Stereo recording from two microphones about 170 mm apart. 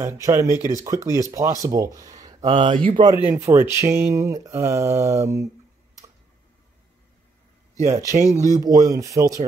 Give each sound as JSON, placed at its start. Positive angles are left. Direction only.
{"t": 0.0, "sound": "speech", "side_deg": -15}
{"t": 3.3, "sound": "speech", "side_deg": -15}
{"t": 7.8, "sound": "speech", "side_deg": -20}